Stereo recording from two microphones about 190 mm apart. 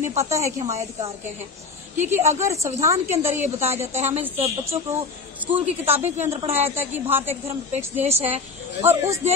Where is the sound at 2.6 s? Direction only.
35° right (ahead or behind).